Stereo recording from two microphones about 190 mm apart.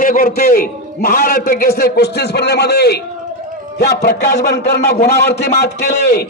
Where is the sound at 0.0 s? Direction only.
50° left (ahead or behind).